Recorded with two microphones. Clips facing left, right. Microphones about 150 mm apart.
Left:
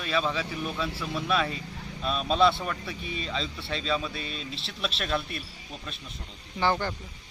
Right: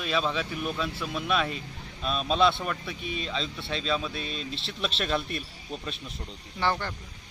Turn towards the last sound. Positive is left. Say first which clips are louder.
# left 2 dB
turn(degrees=5)  # may be behind; listen again after turning